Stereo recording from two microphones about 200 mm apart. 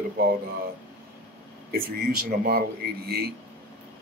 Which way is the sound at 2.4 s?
50° right (ahead or behind).